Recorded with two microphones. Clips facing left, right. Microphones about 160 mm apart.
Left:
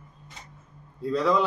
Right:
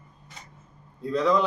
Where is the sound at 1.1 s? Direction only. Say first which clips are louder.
Right 1 dB; centre (ahead or behind).